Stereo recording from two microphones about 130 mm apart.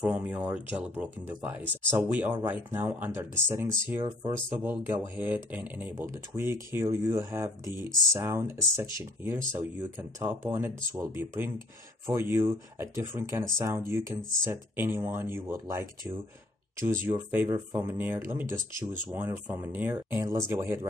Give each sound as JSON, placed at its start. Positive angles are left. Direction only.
{"t": 0.0, "sound": "speech", "side_deg": -10}